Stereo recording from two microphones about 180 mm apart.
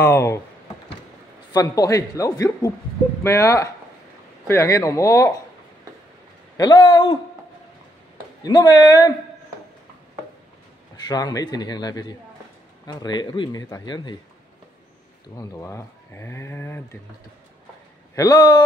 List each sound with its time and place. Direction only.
0.0 s speech: 15° left (ahead or behind)
1.5 s speech: 20° left (ahead or behind)
6.5 s speech: 20° left (ahead or behind)
8.5 s speech: 20° left (ahead or behind)
11.1 s speech: 20° left (ahead or behind)
15.3 s speech: 20° left (ahead or behind)
18.1 s speech: 20° left (ahead or behind)